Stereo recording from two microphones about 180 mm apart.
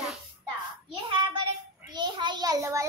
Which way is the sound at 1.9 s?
25° right (ahead or behind).